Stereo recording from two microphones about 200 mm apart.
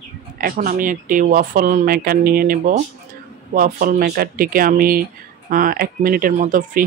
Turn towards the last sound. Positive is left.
turn(degrees=-40)  # may be behind; listen again after turning